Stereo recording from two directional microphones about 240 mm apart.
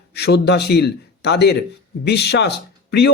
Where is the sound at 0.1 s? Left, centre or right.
Left.